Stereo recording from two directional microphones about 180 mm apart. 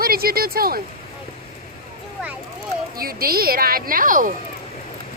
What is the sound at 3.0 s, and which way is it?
A woman's voice, 55° right (ahead or behind).